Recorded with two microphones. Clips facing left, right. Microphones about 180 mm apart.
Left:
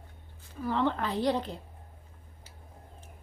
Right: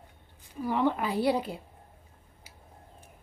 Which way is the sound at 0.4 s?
15° right (ahead or behind).